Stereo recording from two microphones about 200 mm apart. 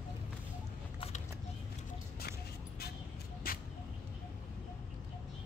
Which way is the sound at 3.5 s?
45° left (ahead or behind).